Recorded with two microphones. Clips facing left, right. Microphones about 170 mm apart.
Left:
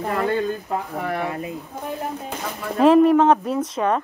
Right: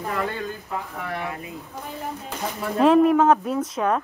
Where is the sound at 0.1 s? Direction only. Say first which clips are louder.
Left 7 dB; 35° left (ahead or behind).